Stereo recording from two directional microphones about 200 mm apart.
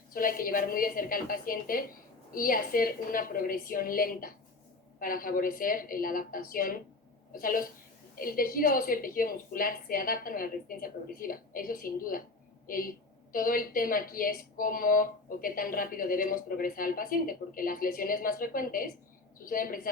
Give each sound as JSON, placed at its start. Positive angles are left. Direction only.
{"t": 0.1, "sound": "speech", "side_deg": 45}